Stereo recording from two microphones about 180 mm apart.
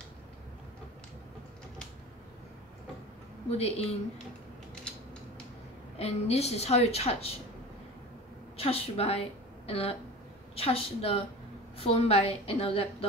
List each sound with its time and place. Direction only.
3.4 s a woman's voice: 35° left (ahead or behind)
5.9 s a woman's voice: 35° left (ahead or behind)
8.5 s a woman's voice: 35° left (ahead or behind)